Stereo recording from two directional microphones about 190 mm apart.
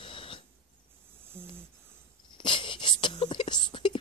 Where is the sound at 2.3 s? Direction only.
25° left (ahead or behind).